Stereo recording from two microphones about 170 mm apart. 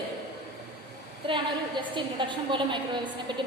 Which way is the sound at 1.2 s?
30° right (ahead or behind).